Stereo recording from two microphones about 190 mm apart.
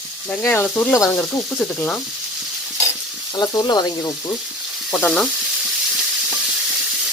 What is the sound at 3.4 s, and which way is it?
Speech, 20° left (ahead or behind).